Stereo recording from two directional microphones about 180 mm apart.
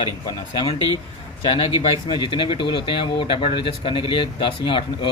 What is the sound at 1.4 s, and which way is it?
Speech, 30° left (ahead or behind).